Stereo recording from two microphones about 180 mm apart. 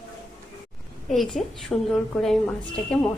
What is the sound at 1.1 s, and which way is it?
A woman's voice, centre (ahead or behind).